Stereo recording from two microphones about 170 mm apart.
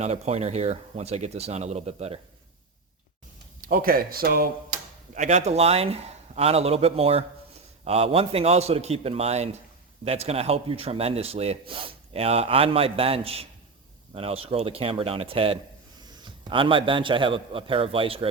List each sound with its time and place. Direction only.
0.0 s a man's voice: 40° right (ahead or behind)
3.6 s speech: 55° right (ahead or behind)
5.1 s a man's voice: 45° right (ahead or behind)